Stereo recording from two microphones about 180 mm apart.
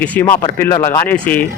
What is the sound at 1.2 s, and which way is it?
Speech, 10° left (ahead or behind).